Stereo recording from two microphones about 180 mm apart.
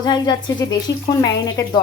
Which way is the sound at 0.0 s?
20° left (ahead or behind).